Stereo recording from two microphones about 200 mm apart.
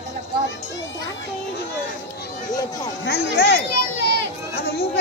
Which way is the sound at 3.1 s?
50° left (ahead or behind).